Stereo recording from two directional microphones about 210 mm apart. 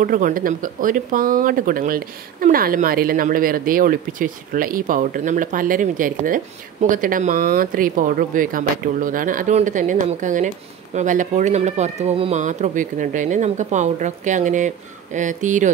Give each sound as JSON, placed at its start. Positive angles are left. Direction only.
{"t": 0.0, "sound": "speech", "side_deg": -40}